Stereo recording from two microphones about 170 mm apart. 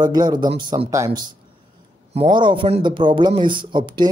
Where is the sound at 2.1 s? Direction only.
30° right (ahead or behind).